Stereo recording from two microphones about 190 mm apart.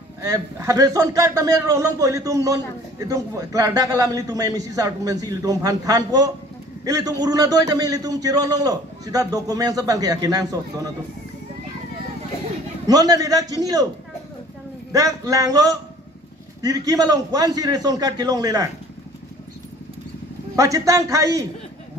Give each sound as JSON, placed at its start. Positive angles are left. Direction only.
{"t": 0.2, "sound": "a man's voice", "side_deg": -15}
{"t": 12.8, "sound": "a man's voice", "side_deg": -20}
{"t": 14.9, "sound": "a man's voice", "side_deg": -20}
{"t": 20.5, "sound": "a man's voice", "side_deg": -15}